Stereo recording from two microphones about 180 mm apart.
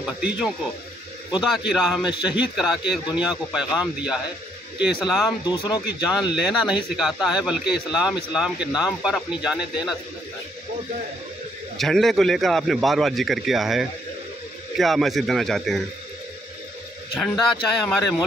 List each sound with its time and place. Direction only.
0.0 s a man's voice: 5° right (ahead or behind)
5.4 s speech: 25° left (ahead or behind)
6.3 s a man's voice: 5° right (ahead or behind)
11.8 s a man's voice: centre (ahead or behind)
17.2 s a man's voice: 5° left (ahead or behind)